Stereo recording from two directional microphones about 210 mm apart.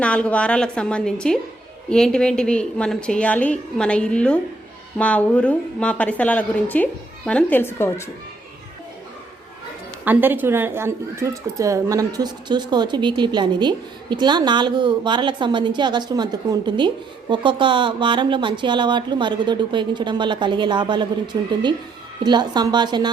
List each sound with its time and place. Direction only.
0.0 s a woman's voice: 5° left (ahead or behind)
10.0 s speech: 10° right (ahead or behind)
22.2 s speech: 20° right (ahead or behind)